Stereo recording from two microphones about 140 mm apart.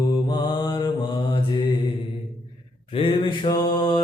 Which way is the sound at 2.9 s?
40° left (ahead or behind).